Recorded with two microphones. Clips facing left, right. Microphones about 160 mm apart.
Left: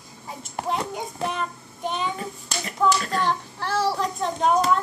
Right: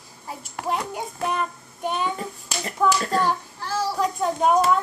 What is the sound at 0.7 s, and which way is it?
Hands, 5° right (ahead or behind).